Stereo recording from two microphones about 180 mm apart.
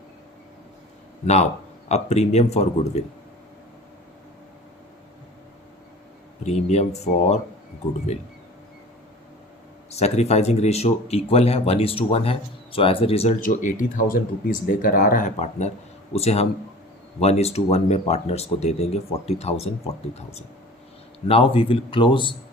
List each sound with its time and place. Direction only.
1.2 s speech: 35° left (ahead or behind)
6.4 s speech: 35° left (ahead or behind)
9.9 s speech: 35° left (ahead or behind)
21.2 s speech: 30° left (ahead or behind)